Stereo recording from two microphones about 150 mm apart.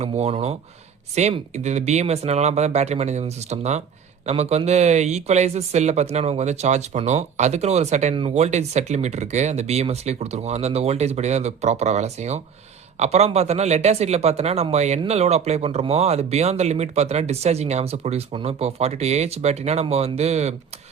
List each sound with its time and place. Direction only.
0.0 s speech: 45° right (ahead or behind)